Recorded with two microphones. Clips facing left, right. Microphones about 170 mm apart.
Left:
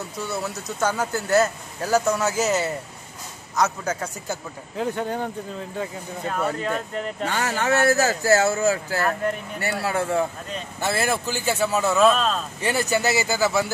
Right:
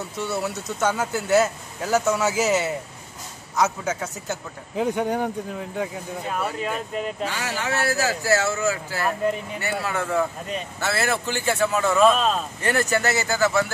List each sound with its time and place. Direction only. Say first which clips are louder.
0.4 s speech: even; 5° right (ahead or behind)
4.7 s speech: right 3 dB; 15° right (ahead or behind)
7.2 s speech: left 4 dB; 50° left (ahead or behind)
9.0 s speech: right 3 dB; 10° right (ahead or behind)
9.6 s speech: left 2 dB; 35° left (ahead or behind)
10.8 s speech: left 2 dB; 15° left (ahead or behind)
12.0 s speech: right 1 dB; 5° right (ahead or behind)